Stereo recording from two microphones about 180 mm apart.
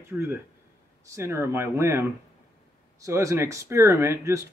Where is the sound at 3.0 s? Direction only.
15° right (ahead or behind).